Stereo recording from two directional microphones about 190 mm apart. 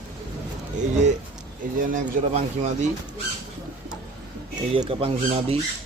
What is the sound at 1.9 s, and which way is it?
Speech, 35° right (ahead or behind).